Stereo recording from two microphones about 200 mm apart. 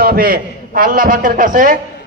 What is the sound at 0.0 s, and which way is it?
A man's voice, 50° right (ahead or behind).